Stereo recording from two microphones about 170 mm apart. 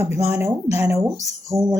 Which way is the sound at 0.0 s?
15° right (ahead or behind).